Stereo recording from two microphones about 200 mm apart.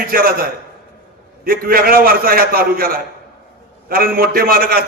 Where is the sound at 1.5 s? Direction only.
45° right (ahead or behind).